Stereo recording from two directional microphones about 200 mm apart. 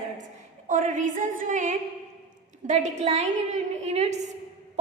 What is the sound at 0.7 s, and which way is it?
A woman's voice, 40° right (ahead or behind).